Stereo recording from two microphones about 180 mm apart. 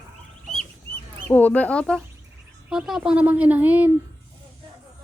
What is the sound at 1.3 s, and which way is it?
Speech, 10° left (ahead or behind).